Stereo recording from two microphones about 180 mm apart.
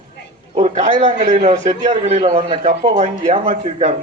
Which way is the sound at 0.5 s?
40° right (ahead or behind).